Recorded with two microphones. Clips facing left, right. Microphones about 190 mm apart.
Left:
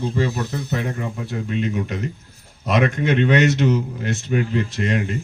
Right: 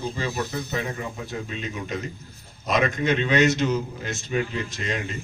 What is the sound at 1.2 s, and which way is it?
A man's voice, 65° left (ahead or behind).